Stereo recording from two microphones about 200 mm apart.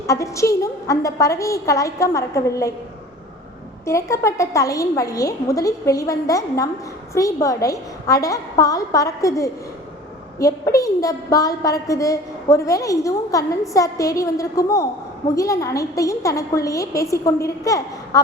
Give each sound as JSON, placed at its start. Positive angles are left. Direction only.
{"t": 0.1, "sound": "a woman's voice", "side_deg": 15}
{"t": 3.8, "sound": "a woman's voice", "side_deg": 15}